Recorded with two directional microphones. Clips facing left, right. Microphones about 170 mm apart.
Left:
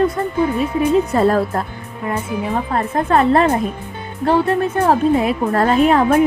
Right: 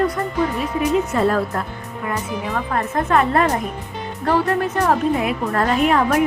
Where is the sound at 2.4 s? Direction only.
30° left (ahead or behind).